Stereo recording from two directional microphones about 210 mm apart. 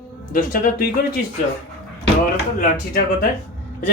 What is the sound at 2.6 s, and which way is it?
Speech, 45° left (ahead or behind).